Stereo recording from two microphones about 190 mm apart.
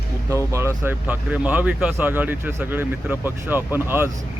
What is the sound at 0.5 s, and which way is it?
Speech, 10° right (ahead or behind).